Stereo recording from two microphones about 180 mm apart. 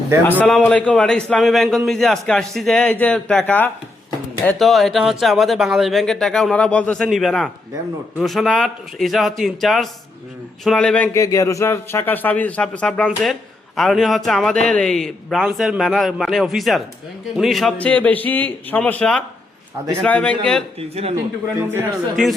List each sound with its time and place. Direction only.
0.3 s a man's voice: 5° left (ahead or behind)
20.7 s a man's voice: 35° right (ahead or behind)
21.6 s a man's voice: 10° right (ahead or behind)